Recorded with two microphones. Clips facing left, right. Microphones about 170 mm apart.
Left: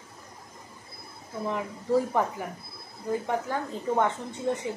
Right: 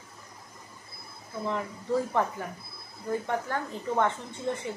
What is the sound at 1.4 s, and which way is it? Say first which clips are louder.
A woman's voice: left 1 dB; 15° left (ahead or behind).